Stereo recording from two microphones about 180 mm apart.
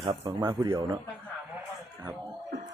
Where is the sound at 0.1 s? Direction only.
25° right (ahead or behind).